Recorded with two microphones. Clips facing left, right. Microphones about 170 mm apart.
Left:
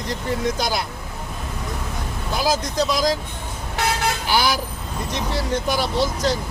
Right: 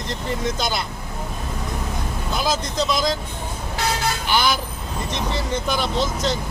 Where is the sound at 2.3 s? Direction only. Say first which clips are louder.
Left 2 dB; 10° left (ahead or behind).